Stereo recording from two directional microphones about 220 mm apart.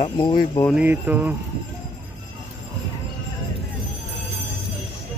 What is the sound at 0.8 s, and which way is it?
Speech, 10° right (ahead or behind).